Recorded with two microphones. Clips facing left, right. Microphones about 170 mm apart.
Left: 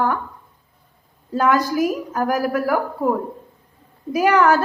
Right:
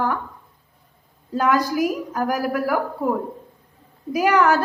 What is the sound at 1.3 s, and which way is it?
A woman's voice, 45° left (ahead or behind).